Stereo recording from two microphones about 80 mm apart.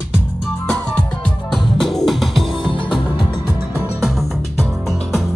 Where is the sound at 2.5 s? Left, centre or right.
Left.